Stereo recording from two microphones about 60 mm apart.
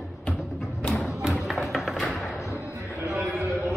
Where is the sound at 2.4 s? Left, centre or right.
Left.